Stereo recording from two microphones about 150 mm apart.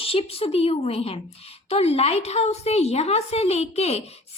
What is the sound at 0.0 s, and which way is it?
A woman's voice, 40° left (ahead or behind).